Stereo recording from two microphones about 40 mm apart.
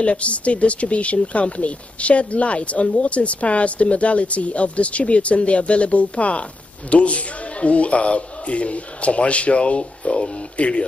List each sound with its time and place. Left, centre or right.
0.0 s speech: left